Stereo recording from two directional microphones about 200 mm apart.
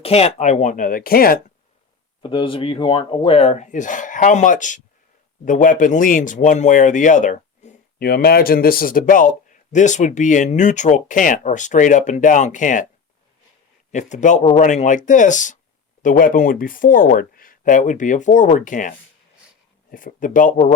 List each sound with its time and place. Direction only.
0.0 s speech: 30° left (ahead or behind); by 1.4 s 45° left (ahead or behind)
2.2 s speech: 25° left (ahead or behind)
13.9 s speech: 40° left (ahead or behind)